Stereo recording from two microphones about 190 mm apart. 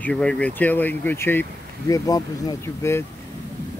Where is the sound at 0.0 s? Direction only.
5° left (ahead or behind).